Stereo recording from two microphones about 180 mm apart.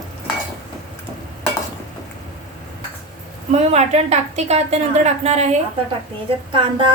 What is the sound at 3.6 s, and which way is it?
A woman's voice, 35° right (ahead or behind).